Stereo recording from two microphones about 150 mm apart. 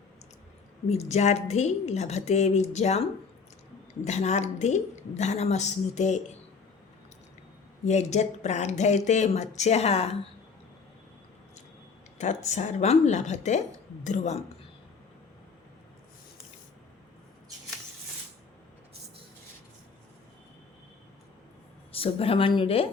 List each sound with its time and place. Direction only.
0.9 s speech: 45° left (ahead or behind)
7.9 s speech: 50° left (ahead or behind)
12.2 s speech: 50° left (ahead or behind)
21.9 s speech: 40° left (ahead or behind)